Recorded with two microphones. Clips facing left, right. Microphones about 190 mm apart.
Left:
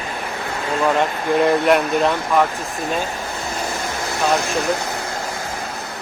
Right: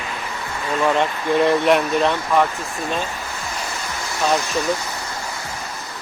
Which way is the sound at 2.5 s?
15° left (ahead or behind).